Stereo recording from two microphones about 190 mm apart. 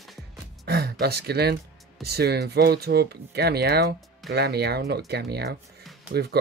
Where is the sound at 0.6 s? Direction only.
55° right (ahead or behind).